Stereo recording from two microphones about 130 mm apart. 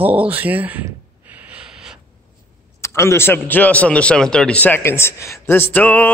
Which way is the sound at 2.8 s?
20° left (ahead or behind).